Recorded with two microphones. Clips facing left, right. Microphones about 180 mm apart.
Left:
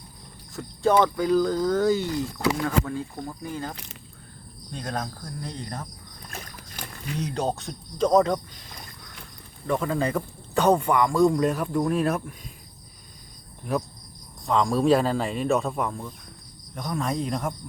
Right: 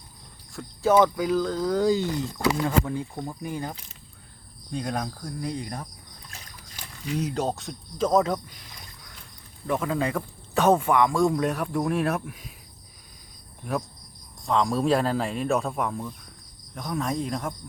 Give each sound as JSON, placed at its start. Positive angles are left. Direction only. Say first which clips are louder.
{"t": 0.5, "sound": "a man's voice", "louder": "right 1 dB", "side_deg": -5}
{"t": 1.7, "sound": "cricket", "louder": "even", "side_deg": -15}
{"t": 6.2, "sound": "boat", "louder": "left 8 dB", "side_deg": 55}
{"t": 7.2, "sound": "a man's voice", "louder": "left 1 dB", "side_deg": -5}
{"t": 9.6, "sound": "a man's voice", "louder": "left 1 dB", "side_deg": -5}
{"t": 14.4, "sound": "a man's voice", "louder": "left 2 dB", "side_deg": 0}